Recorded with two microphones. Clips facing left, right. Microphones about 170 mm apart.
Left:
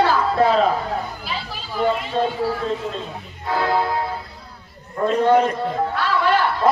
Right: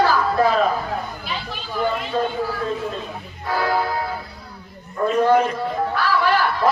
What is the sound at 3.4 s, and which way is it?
Music, 25° left (ahead or behind).